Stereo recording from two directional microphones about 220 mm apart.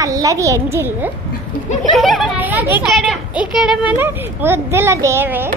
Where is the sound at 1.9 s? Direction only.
Centre (ahead or behind).